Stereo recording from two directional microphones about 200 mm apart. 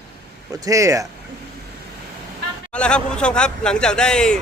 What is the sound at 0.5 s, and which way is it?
Speech, 15° right (ahead or behind).